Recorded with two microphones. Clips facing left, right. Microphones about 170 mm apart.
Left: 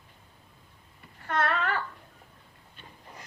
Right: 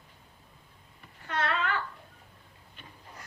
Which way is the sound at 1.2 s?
45° left (ahead or behind).